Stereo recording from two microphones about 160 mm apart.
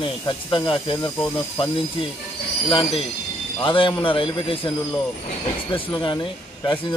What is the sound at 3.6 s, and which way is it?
Speech, 30° left (ahead or behind).